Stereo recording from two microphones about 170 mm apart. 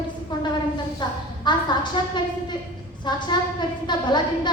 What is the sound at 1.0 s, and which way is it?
A woman's voice, 25° left (ahead or behind).